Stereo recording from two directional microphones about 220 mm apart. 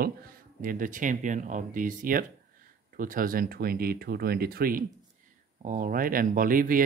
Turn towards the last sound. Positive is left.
turn(degrees=-40)  # may be behind; listen again after turning